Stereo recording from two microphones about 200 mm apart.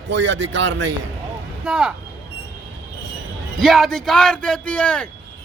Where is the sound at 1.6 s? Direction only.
5° right (ahead or behind).